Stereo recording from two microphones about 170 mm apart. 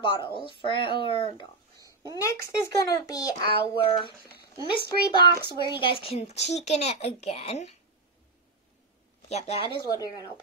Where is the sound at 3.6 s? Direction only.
30° left (ahead or behind).